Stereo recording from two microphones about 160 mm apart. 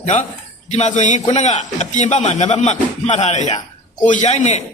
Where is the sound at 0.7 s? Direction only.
45° left (ahead or behind).